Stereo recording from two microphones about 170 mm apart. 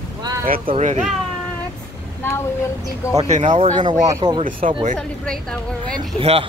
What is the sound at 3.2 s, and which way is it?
Speech, 45° right (ahead or behind).